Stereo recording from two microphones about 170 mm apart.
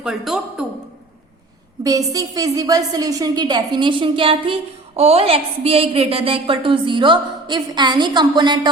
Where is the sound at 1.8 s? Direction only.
20° right (ahead or behind).